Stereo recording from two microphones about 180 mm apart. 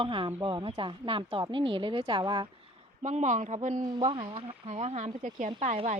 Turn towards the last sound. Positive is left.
turn(degrees=-40)  # may be behind; listen again after turning